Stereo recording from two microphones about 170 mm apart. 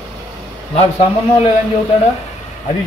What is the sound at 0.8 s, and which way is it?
Speech, 35° left (ahead or behind).